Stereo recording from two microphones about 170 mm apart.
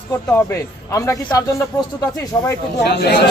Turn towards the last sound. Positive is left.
turn(degrees=75)  # may be behind; listen again after turning